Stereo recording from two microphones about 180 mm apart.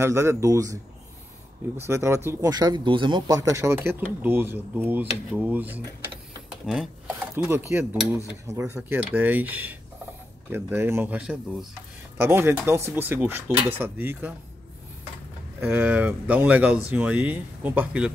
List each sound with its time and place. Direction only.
0.0 s speech: 15° right (ahead or behind)
1.8 s speech: 15° right (ahead or behind)
6.6 s speech: centre (ahead or behind)
7.3 s speech: 15° right (ahead or behind)
15.6 s speech: 10° right (ahead or behind)